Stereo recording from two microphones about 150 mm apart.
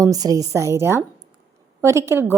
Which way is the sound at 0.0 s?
25° right (ahead or behind).